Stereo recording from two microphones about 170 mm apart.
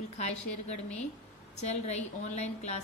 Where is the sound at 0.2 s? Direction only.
40° left (ahead or behind).